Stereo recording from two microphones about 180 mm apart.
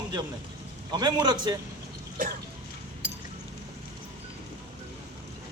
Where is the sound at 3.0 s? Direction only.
65° right (ahead or behind).